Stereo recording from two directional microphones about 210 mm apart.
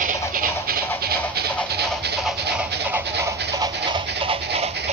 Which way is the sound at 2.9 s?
15° right (ahead or behind).